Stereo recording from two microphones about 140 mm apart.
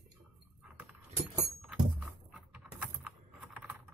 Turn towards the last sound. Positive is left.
turn(degrees=-10)  # may be behind; listen again after turning